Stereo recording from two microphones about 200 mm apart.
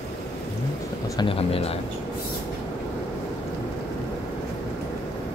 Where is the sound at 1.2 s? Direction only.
30° left (ahead or behind).